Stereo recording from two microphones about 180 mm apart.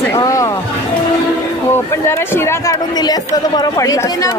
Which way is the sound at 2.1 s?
15° left (ahead or behind).